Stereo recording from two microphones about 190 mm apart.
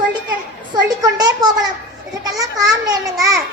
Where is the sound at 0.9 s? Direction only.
20° right (ahead or behind).